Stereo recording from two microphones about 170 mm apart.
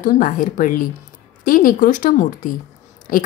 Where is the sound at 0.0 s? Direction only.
50° left (ahead or behind).